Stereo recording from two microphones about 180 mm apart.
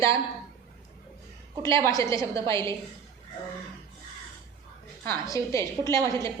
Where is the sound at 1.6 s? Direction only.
15° left (ahead or behind).